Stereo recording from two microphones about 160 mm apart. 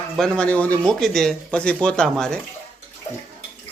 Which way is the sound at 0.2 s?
5° left (ahead or behind).